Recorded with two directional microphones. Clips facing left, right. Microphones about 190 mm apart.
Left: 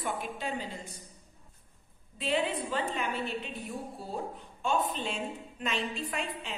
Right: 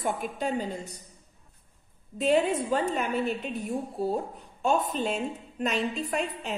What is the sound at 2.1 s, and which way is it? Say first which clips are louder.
A woman's voice: right 7 dB; 45° right (ahead or behind).